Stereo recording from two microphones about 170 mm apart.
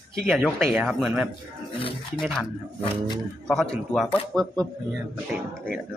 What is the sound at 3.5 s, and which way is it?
Speech, 5° left (ahead or behind).